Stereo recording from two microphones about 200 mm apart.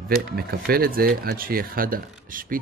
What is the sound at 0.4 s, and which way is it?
Speech, 50° right (ahead or behind).